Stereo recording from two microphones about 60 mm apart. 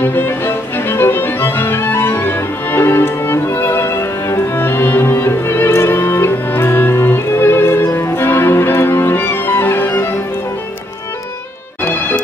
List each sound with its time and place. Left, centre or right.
0.0 s music: left